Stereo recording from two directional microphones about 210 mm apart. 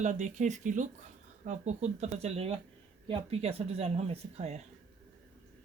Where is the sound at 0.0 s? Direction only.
35° right (ahead or behind).